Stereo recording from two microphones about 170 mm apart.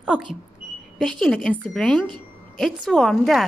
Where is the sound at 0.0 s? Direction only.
5° right (ahead or behind).